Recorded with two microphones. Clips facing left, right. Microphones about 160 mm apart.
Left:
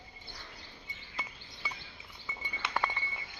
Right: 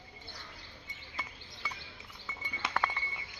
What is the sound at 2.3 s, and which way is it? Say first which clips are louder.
Chink: even; 15° left (ahead or behind).